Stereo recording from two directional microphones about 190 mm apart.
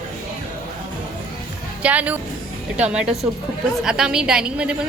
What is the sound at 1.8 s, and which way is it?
A woman's voice, 5° right (ahead or behind).